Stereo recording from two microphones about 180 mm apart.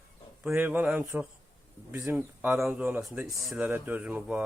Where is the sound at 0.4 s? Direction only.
10° right (ahead or behind).